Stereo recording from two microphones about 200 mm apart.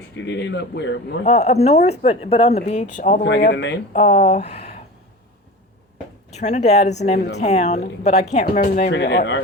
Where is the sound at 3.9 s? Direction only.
40° left (ahead or behind).